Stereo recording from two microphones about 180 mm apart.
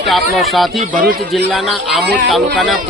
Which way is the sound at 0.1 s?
Centre (ahead or behind).